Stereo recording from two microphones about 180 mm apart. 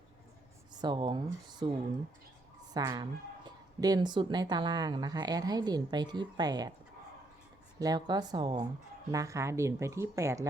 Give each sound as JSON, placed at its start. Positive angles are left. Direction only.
{"t": 0.8, "sound": "speech", "side_deg": -25}
{"t": 2.7, "sound": "speech", "side_deg": -20}
{"t": 7.8, "sound": "speech", "side_deg": -20}